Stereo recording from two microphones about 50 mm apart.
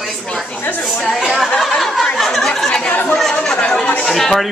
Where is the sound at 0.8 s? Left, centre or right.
Centre.